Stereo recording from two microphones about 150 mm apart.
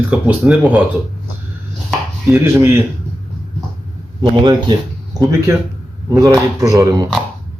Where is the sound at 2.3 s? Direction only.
15° right (ahead or behind).